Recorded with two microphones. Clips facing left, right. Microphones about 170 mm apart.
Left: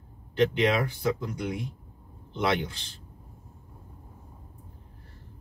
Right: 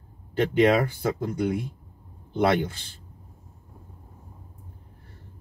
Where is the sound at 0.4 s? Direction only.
50° right (ahead or behind).